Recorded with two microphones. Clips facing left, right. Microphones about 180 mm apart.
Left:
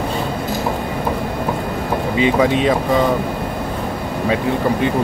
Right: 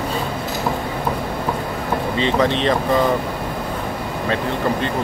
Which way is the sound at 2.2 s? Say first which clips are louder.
Left 4 dB; 10° left (ahead or behind).